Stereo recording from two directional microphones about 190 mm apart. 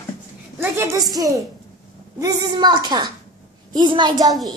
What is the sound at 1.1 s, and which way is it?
A woman's voice, 20° right (ahead or behind).